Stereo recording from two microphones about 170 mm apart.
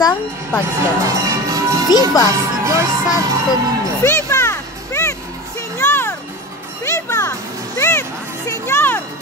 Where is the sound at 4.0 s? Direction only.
15° left (ahead or behind).